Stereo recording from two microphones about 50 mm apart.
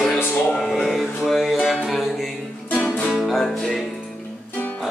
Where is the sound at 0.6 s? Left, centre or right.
Centre.